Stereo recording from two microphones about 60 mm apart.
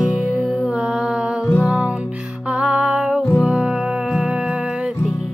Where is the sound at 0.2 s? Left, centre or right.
Right.